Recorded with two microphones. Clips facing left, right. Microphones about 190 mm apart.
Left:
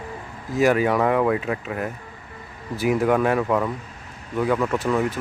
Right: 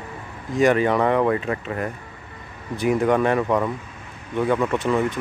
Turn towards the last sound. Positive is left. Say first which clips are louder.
# right 1 dB
turn(degrees=0)  # may be behind; listen again after turning